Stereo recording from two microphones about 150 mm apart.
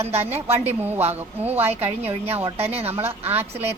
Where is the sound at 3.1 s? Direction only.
15° right (ahead or behind).